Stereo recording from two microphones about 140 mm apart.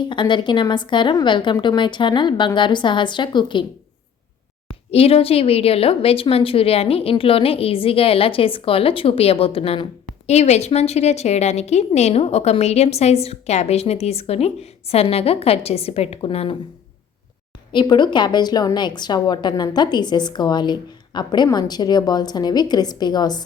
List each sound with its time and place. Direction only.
0.0 s a woman's voice: 35° left (ahead or behind)
4.9 s a woman's voice: 45° left (ahead or behind)
10.2 s a woman's voice: 50° left (ahead or behind)
17.7 s a woman's voice: 35° left (ahead or behind)